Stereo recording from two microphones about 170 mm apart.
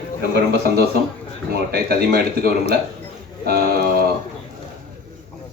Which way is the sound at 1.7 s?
70° right (ahead or behind).